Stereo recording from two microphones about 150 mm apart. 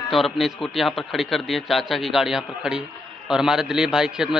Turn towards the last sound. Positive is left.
turn(degrees=-5)  # may be behind; listen again after turning